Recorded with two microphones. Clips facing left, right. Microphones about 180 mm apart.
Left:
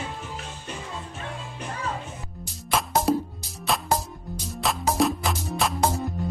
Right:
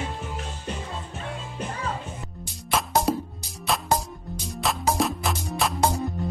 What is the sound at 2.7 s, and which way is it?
Music, centre (ahead or behind).